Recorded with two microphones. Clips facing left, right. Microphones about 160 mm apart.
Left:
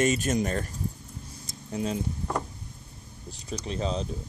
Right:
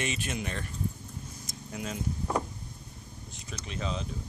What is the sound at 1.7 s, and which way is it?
Speech, 30° left (ahead or behind).